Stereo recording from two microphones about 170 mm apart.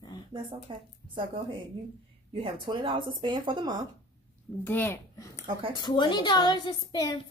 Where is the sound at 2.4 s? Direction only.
30° right (ahead or behind).